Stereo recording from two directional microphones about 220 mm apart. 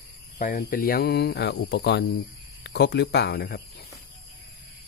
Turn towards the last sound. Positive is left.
turn(degrees=50)  # may be behind; listen again after turning